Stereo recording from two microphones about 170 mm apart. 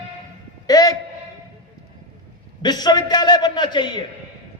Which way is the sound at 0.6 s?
25° left (ahead or behind).